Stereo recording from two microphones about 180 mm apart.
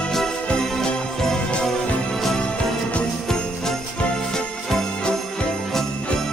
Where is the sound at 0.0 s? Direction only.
Centre (ahead or behind).